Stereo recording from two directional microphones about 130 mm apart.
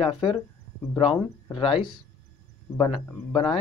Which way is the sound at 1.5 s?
45° left (ahead or behind).